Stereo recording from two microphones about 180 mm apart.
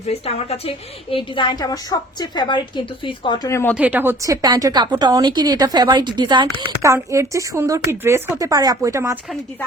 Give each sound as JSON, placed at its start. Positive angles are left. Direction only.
{"t": 0.0, "sound": "a woman's voice", "side_deg": 35}
{"t": 3.8, "sound": "speech", "side_deg": -10}